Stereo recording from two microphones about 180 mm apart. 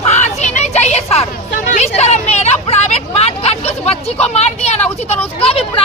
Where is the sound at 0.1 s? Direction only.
40° left (ahead or behind).